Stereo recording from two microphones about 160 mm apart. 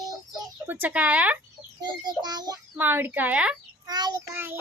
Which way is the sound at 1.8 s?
25° right (ahead or behind).